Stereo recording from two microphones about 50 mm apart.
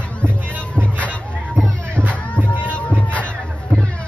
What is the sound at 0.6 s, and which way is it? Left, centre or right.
Music, left.